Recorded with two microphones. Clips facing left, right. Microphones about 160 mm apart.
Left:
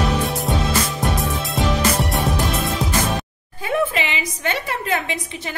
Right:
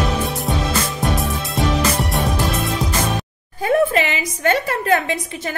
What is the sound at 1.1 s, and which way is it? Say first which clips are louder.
Music: right 1 dB; centre (ahead or behind).